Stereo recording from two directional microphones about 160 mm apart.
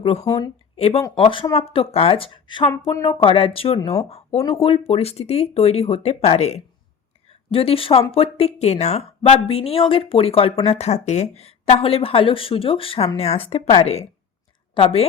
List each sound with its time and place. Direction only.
0.0 s a woman's voice: 40° left (ahead or behind)